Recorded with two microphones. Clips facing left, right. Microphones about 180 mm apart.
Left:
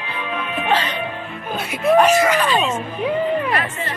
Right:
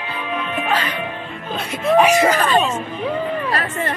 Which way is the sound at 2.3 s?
45° right (ahead or behind).